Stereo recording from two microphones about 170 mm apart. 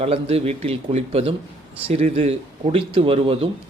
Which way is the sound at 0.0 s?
35° right (ahead or behind).